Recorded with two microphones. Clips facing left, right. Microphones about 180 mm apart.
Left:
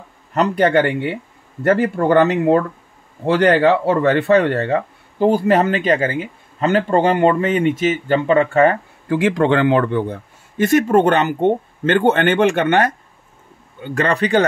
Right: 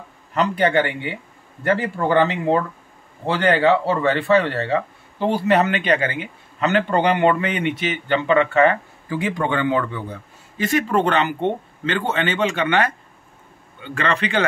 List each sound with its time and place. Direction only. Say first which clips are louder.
0.3 s speech: left 3 dB; 40° left (ahead or behind)
2.0 s speech: left 4 dB; 45° left (ahead or behind)
3.4 s speech: left 2 dB; 60° left (ahead or behind); by 8.7 s 40° left (ahead or behind)
9.1 s speech: left 7 dB; 90° left; by 14.4 s 40° left (ahead or behind)